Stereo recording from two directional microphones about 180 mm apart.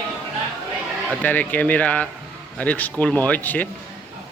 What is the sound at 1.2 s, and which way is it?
Speech, 10° left (ahead or behind).